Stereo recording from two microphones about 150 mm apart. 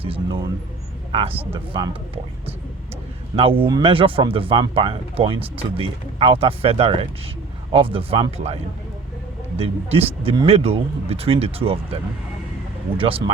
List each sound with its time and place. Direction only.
0.0 s speech: 35° right (ahead or behind)
1.7 s speech: 35° right (ahead or behind)
3.3 s speech: 40° right (ahead or behind)
9.6 s speech: 40° right (ahead or behind)
13.0 s speech: 40° right (ahead or behind)